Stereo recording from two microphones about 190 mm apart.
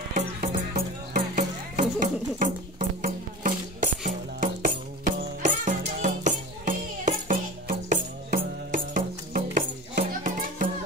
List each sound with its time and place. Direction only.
0.1 s music: 45° right (ahead or behind)